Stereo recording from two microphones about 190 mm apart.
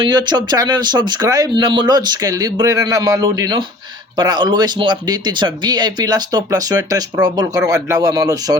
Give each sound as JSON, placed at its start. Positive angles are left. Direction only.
{"t": 0.0, "sound": "speech", "side_deg": -20}